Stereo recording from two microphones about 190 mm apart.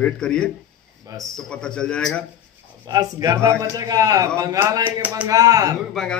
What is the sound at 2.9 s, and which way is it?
A man's voice, 20° right (ahead or behind).